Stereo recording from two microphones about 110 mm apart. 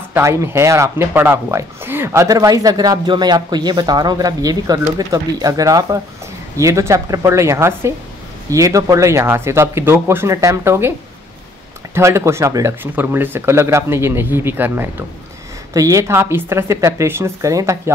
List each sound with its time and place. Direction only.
0.1 s speech: 25° right (ahead or behind)
11.9 s speech: 25° right (ahead or behind)
15.7 s speech: 30° right (ahead or behind)